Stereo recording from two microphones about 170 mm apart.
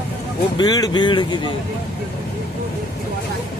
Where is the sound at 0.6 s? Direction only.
20° left (ahead or behind).